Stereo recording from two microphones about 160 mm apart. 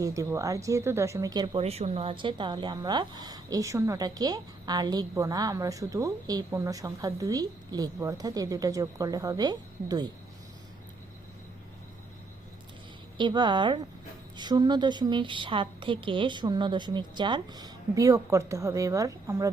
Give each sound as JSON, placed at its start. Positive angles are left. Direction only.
{"t": 0.0, "sound": "speech", "side_deg": -20}
{"t": 1.6, "sound": "speech", "side_deg": -40}
{"t": 13.1, "sound": "speech", "side_deg": -30}